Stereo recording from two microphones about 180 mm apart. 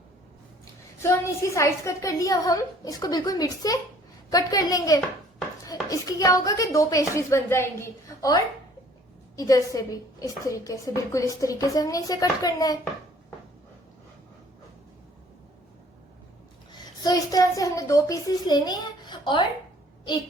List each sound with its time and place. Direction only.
0.9 s a woman's voice: 15° left (ahead or behind)
17.0 s a woman's voice: 20° left (ahead or behind)